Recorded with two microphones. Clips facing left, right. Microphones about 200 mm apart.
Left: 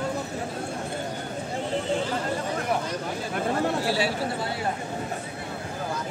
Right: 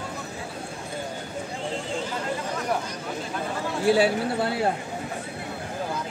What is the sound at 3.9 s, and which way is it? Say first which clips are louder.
Speech: right 5 dB; 55° right (ahead or behind).